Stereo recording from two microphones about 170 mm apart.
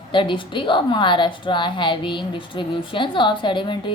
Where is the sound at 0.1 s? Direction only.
30° left (ahead or behind).